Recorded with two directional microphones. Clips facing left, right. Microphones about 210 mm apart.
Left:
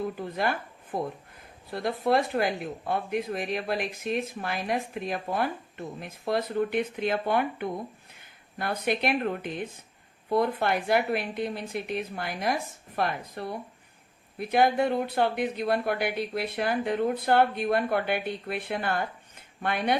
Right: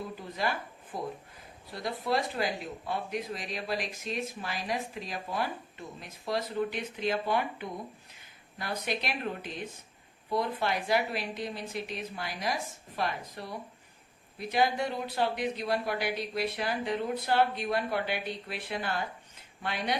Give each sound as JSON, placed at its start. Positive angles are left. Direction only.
{"t": 0.2, "sound": "speech", "side_deg": 55}